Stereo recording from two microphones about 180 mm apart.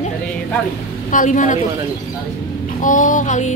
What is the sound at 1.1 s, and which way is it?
Speech, 45° left (ahead or behind).